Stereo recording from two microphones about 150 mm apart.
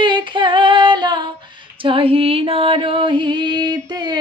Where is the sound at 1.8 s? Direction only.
35° right (ahead or behind).